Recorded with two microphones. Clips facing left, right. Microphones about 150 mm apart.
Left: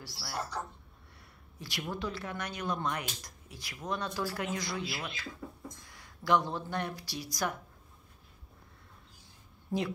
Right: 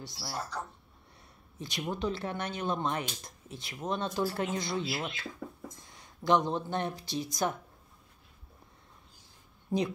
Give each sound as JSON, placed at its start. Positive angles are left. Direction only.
{"t": 0.0, "sound": "speech", "side_deg": -20}
{"t": 1.6, "sound": "speech", "side_deg": -20}
{"t": 9.7, "sound": "a woman's voice", "side_deg": -20}